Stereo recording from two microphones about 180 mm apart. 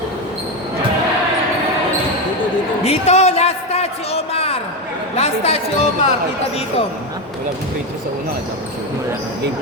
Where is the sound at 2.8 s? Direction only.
35° left (ahead or behind).